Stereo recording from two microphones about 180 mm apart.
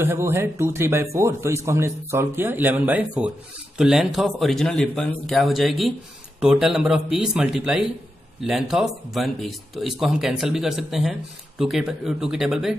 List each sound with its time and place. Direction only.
0.0 s speech: 15° right (ahead or behind)